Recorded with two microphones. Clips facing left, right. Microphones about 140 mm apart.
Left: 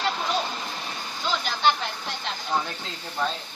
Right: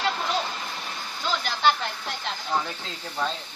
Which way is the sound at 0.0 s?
Centre (ahead or behind).